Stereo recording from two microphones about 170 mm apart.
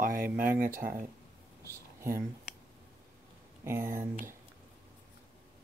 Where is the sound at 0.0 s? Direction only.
55° right (ahead or behind).